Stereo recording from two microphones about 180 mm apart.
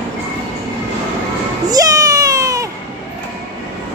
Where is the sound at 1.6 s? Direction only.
20° right (ahead or behind).